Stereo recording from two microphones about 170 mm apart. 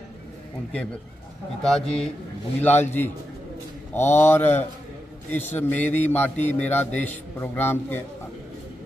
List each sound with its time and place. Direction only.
1.6 s a man's voice: 5° left (ahead or behind)